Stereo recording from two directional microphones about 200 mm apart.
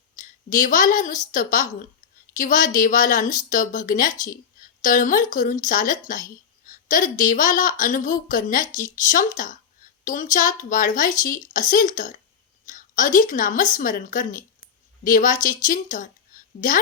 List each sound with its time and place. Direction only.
0.2 s a woman's voice: 40° left (ahead or behind)